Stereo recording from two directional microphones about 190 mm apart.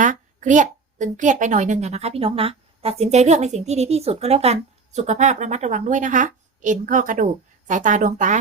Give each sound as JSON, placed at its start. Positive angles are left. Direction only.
{"t": 0.0, "sound": "a woman's voice", "side_deg": -40}